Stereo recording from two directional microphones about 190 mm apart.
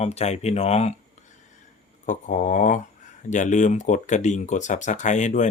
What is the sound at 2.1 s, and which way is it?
Speech, 40° left (ahead or behind).